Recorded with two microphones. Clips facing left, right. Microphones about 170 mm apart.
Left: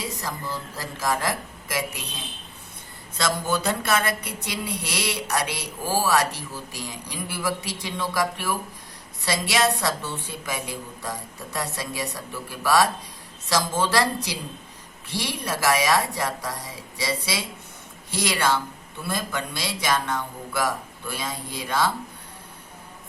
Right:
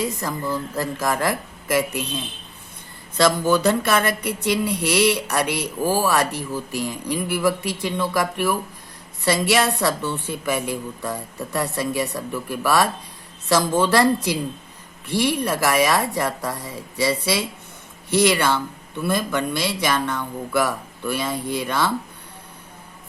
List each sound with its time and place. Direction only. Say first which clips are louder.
0.0 s speech: right 7 dB; 55° right (ahead or behind)
3.2 s speech: right 7 dB; 55° right (ahead or behind)